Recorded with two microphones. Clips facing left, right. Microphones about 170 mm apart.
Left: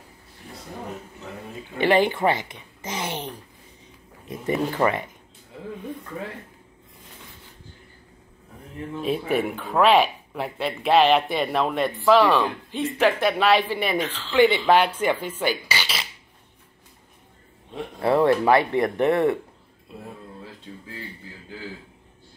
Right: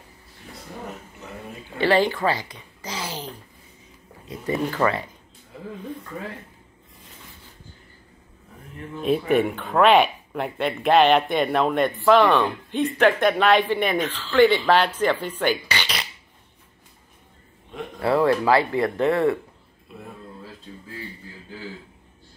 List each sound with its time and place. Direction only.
1.8 s a woman's voice: 15° left (ahead or behind)
4.3 s speech: 20° left (ahead or behind)
9.0 s speech: centre (ahead or behind)
18.0 s speech: 25° left (ahead or behind)